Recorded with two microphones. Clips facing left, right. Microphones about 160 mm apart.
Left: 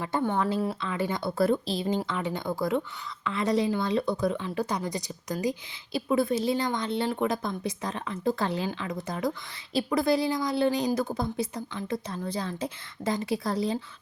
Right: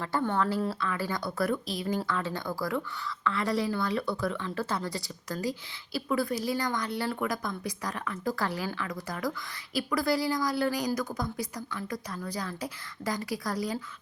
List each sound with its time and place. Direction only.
0.0 s a woman's voice: 15° left (ahead or behind)